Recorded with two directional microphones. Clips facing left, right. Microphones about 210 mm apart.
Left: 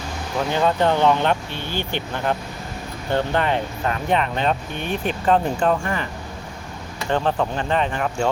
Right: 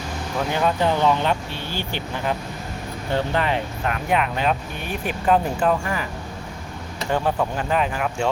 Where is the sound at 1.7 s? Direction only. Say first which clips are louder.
Left 4 dB; 55° left (ahead or behind).